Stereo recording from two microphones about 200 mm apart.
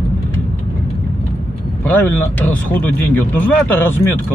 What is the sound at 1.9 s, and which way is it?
Speech, 10° left (ahead or behind).